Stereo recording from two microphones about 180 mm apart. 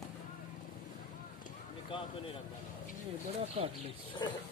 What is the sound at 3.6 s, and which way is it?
Speech, 30° right (ahead or behind).